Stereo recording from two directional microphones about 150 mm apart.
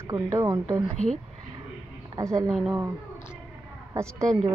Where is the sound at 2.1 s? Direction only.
20° right (ahead or behind).